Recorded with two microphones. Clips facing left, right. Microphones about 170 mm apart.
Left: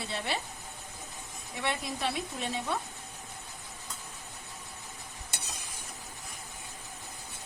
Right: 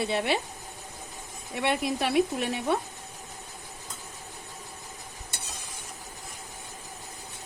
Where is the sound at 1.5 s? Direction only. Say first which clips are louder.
Right 7 dB; 65° right (ahead or behind).